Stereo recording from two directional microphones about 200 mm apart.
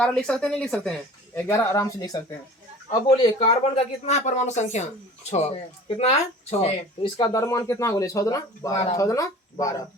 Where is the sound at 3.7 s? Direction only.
35° left (ahead or behind).